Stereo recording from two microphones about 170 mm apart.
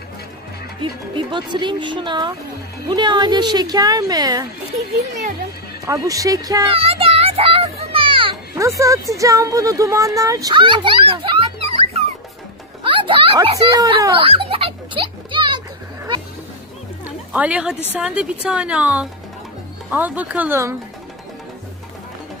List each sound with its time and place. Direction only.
0.7 s speech: 30° right (ahead or behind)
5.9 s speech: 20° right (ahead or behind)
6.7 s music: 35° right (ahead or behind)
8.5 s speech: 20° right (ahead or behind)
14.1 s a sound: 35° right (ahead or behind)
17.0 s a sound: 10° right (ahead or behind)
17.9 s a woman's voice: 5° right (ahead or behind)